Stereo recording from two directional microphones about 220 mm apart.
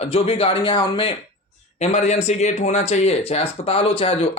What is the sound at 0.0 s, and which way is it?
Speech, 25° left (ahead or behind).